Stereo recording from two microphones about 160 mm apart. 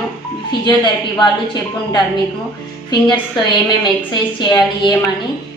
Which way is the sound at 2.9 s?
30° left (ahead or behind).